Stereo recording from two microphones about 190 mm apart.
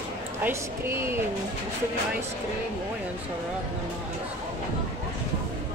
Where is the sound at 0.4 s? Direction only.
15° right (ahead or behind).